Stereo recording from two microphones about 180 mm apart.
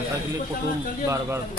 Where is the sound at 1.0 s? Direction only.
15° right (ahead or behind).